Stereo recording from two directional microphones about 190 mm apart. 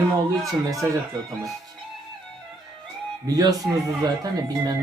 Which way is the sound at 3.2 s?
20° right (ahead or behind).